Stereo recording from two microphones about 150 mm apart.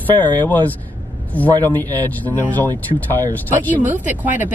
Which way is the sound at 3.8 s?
10° right (ahead or behind).